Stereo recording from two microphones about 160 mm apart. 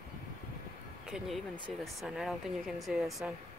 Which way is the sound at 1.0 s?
5° right (ahead or behind).